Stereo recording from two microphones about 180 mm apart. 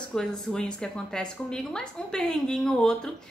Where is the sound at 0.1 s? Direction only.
5° left (ahead or behind).